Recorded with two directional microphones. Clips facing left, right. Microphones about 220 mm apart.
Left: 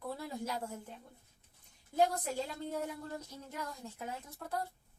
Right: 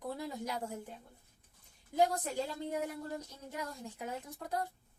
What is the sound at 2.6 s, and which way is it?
A woman's voice, 15° right (ahead or behind).